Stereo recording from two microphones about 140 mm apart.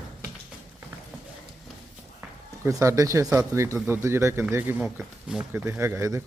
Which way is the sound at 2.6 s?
20° right (ahead or behind).